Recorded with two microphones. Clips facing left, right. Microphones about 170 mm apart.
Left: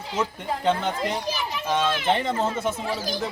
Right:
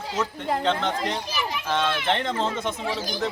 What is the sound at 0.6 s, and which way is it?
Speech, 10° left (ahead or behind).